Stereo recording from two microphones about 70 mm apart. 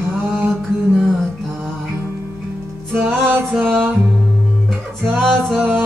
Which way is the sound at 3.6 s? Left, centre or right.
Right.